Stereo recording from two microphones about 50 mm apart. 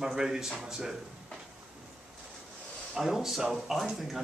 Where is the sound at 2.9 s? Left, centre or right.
Centre.